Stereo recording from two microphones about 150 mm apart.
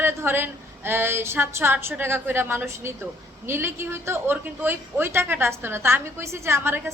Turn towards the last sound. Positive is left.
turn(degrees=-15)  # may be behind; listen again after turning